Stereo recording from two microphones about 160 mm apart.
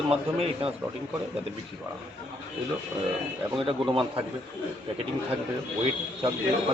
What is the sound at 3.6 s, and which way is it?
Speech, 35° right (ahead or behind).